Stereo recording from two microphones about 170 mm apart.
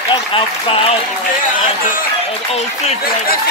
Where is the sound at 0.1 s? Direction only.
30° left (ahead or behind).